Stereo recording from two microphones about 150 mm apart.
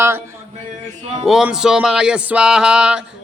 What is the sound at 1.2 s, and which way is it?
Music, 5° right (ahead or behind).